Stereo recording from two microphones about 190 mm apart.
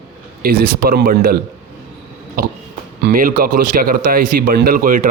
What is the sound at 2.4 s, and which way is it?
A man's voice, 55° right (ahead or behind).